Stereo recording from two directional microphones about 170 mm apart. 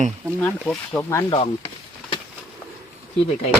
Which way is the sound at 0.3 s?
10° left (ahead or behind).